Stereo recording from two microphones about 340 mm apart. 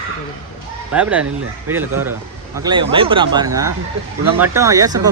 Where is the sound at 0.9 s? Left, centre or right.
Centre.